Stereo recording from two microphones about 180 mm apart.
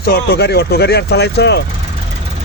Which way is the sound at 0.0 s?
60° left (ahead or behind).